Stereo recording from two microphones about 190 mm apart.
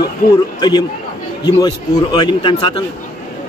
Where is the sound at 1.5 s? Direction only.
20° left (ahead or behind).